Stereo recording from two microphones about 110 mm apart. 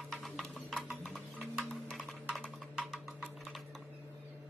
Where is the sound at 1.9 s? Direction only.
Centre (ahead or behind).